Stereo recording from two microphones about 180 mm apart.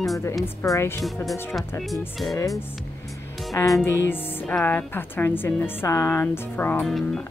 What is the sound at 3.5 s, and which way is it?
Speech, 20° left (ahead or behind).